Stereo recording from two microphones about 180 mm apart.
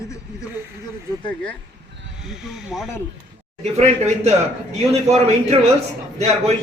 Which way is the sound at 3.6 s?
35° right (ahead or behind).